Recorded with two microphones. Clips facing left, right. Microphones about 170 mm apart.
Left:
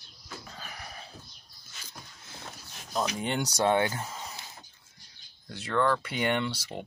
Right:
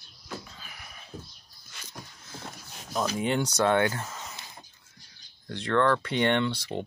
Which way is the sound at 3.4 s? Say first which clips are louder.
Even; 15° left (ahead or behind).